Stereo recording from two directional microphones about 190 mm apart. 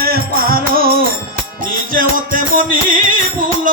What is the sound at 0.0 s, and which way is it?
Music, 50° right (ahead or behind).